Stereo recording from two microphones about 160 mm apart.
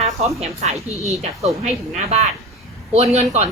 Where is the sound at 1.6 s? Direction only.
40° right (ahead or behind).